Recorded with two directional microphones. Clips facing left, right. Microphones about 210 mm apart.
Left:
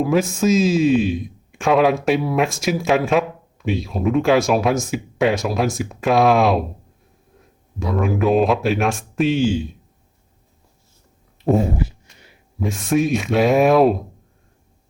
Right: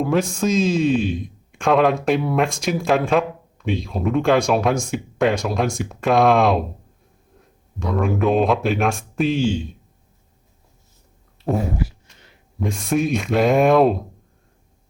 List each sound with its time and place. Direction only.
0.0 s a man's voice: 5° left (ahead or behind)
7.8 s a man's voice: 5° left (ahead or behind)
11.5 s a sound: 25° left (ahead or behind)
12.2 s speech: 5° left (ahead or behind)